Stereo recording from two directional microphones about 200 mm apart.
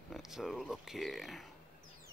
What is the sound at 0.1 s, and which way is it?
Speech, centre (ahead or behind).